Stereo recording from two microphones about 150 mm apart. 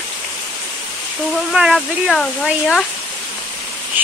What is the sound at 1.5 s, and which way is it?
Speech, centre (ahead or behind).